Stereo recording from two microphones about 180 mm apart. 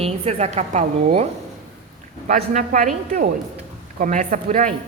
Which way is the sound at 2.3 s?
45° right (ahead or behind).